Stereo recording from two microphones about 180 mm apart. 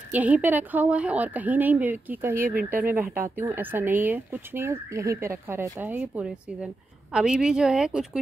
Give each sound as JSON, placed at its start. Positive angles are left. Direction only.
{"t": 0.1, "sound": "speech", "side_deg": -10}